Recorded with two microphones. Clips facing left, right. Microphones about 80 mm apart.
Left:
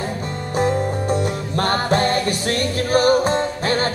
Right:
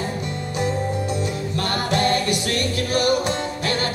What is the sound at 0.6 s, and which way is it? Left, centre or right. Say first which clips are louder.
Music: left 5 dB; left.